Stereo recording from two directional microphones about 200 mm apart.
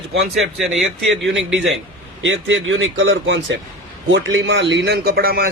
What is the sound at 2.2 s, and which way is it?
A man's voice, 70° right (ahead or behind).